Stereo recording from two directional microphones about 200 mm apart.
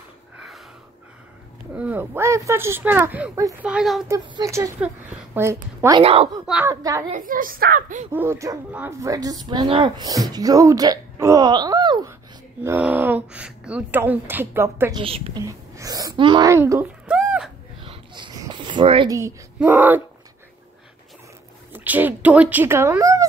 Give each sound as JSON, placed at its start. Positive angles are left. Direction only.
{"t": 1.8, "sound": "speech", "side_deg": -10}
{"t": 4.1, "sound": "speech", "side_deg": -15}
{"t": 6.0, "sound": "a woman's voice", "side_deg": -30}
{"t": 6.4, "sound": "speech", "side_deg": -5}
{"t": 6.7, "sound": "speech", "side_deg": -15}
{"t": 7.1, "sound": "speech", "side_deg": -40}
{"t": 8.1, "sound": "speech", "side_deg": -10}
{"t": 12.6, "sound": "speech", "side_deg": -10}
{"t": 15.0, "sound": "a woman's voice", "side_deg": -30}
{"t": 15.4, "sound": "speech", "side_deg": -15}
{"t": 17.8, "sound": "a sound", "side_deg": -25}
{"t": 19.1, "sound": "speech", "side_deg": -10}
{"t": 21.7, "sound": "speech", "side_deg": -10}